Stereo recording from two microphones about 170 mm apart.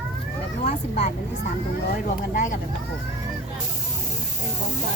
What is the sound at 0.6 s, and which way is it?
Speech, 40° left (ahead or behind).